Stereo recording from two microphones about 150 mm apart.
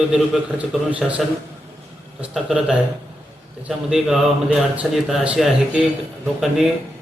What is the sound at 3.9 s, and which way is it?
A man's voice, 5° right (ahead or behind).